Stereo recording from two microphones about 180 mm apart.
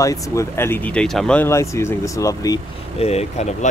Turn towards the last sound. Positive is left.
turn(degrees=35)  # may be behind; listen again after turning